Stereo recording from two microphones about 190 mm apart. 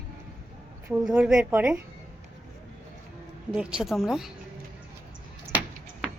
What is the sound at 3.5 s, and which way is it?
Speech, 5° right (ahead or behind).